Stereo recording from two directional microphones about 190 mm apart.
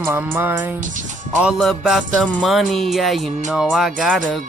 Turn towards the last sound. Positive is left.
turn(degrees=5)  # may be behind; listen again after turning